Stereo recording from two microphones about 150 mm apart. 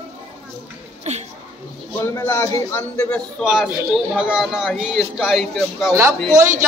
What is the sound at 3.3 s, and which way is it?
Speech, 5° right (ahead or behind).